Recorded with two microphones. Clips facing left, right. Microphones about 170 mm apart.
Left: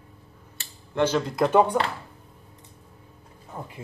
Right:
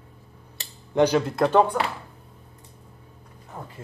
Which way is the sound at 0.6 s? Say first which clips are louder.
Right 4 dB; 15° right (ahead or behind).